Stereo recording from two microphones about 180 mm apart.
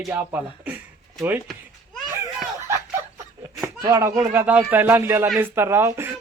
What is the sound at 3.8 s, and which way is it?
Speech, 20° right (ahead or behind).